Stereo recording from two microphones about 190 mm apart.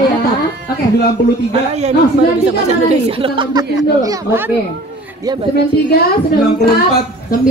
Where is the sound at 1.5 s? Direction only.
35° right (ahead or behind).